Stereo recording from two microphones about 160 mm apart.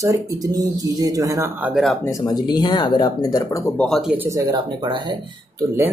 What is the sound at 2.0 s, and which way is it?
Speech, 20° left (ahead or behind).